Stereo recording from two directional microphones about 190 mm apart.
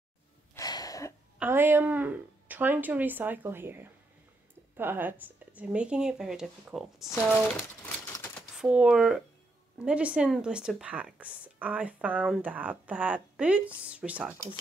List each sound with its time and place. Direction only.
0.6 s sneeze: 20° left (ahead or behind)
1.4 s speech: 10° right (ahead or behind)
7.5 s a sound: 15° left (ahead or behind)
8.5 s speech: 5° right (ahead or behind)